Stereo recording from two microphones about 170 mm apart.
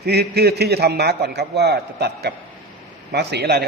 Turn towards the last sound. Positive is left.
turn(degrees=-70)  # may be behind; listen again after turning